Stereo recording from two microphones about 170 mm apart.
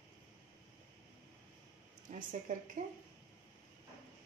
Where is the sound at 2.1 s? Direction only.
45° right (ahead or behind).